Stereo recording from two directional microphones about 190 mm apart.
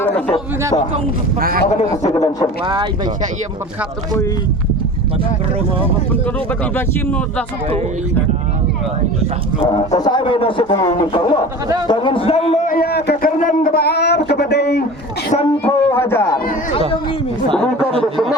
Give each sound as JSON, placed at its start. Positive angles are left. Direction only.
{"t": 1.4, "sound": "a man's voice", "side_deg": -50}
{"t": 2.1, "sound": "a man's voice", "side_deg": 20}
{"t": 2.6, "sound": "speech", "side_deg": -25}
{"t": 6.7, "sound": "speech", "side_deg": 10}
{"t": 9.6, "sound": "a man's voice", "side_deg": 35}
{"t": 12.6, "sound": "a sound", "side_deg": 50}
{"t": 15.6, "sound": "a sound", "side_deg": 10}